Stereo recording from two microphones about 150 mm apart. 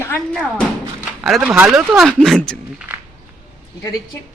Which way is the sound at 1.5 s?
15° right (ahead or behind).